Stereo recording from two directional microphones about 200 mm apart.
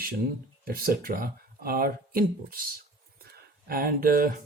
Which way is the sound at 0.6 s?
45° right (ahead or behind).